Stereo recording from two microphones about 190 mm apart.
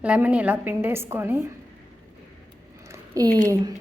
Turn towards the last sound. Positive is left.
turn(degrees=-20)  # may be behind; listen again after turning